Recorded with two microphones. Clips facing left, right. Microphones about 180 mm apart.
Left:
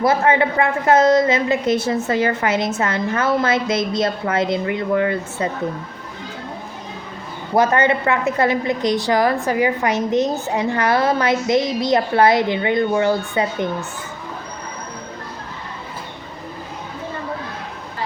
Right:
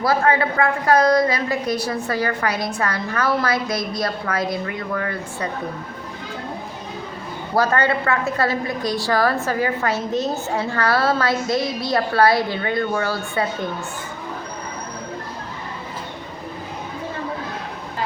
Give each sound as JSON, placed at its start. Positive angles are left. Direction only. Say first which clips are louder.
{"t": 0.0, "sound": "a woman's voice", "louder": "left 2 dB", "side_deg": 20}
{"t": 7.5, "sound": "a woman's voice", "louder": "left 3 dB", "side_deg": 20}